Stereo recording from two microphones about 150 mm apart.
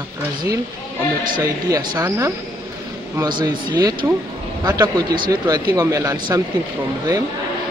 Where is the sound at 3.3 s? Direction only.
30° right (ahead or behind).